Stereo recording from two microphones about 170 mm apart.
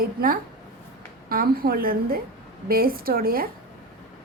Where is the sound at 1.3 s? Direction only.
60° right (ahead or behind).